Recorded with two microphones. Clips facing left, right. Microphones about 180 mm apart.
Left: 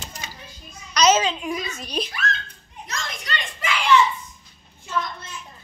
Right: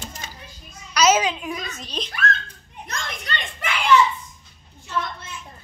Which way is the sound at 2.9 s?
55° right (ahead or behind).